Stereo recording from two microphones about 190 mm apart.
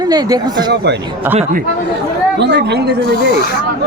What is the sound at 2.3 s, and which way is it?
Speech, 65° right (ahead or behind).